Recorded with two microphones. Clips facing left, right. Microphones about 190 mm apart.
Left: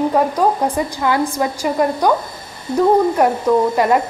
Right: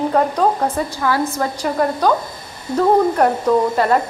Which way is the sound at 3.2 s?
10° left (ahead or behind).